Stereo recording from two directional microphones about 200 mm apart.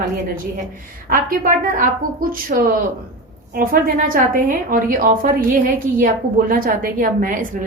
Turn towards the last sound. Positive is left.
turn(degrees=-40)  # may be behind; listen again after turning